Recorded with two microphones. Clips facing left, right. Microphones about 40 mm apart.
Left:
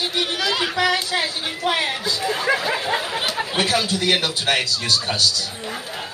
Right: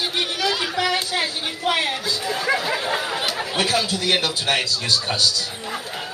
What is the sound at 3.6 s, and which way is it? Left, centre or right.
A man's voice, left.